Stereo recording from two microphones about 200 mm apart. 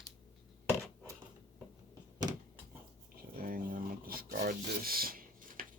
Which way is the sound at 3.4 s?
45° right (ahead or behind).